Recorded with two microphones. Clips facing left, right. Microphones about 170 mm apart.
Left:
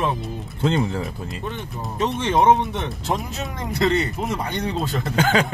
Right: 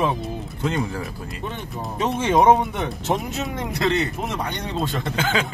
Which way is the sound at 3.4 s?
Centre (ahead or behind).